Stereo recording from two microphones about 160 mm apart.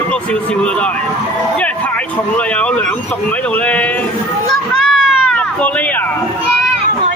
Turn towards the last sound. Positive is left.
turn(degrees=10)  # may be behind; listen again after turning